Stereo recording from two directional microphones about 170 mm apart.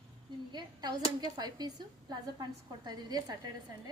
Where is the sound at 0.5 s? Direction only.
25° right (ahead or behind).